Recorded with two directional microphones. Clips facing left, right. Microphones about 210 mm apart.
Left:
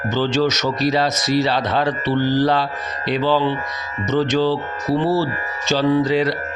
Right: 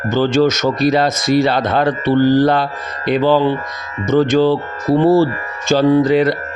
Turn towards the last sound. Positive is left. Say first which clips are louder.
# right 5 dB
turn(degrees=-55)  # may be behind; listen again after turning